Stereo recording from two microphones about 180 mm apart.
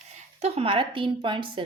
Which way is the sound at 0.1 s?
40° right (ahead or behind).